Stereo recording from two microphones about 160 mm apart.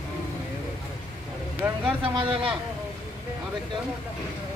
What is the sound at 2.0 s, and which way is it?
Speech, 35° right (ahead or behind).